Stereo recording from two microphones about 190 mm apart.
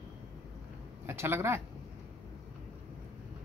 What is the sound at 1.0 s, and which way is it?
Speech, 15° right (ahead or behind).